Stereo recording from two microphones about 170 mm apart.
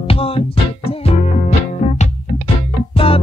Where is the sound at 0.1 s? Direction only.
35° left (ahead or behind).